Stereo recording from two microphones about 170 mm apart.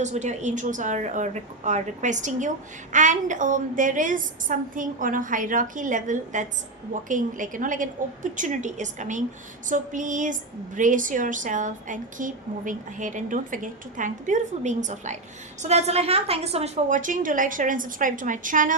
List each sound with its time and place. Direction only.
0.0 s a woman's voice: 45° right (ahead or behind)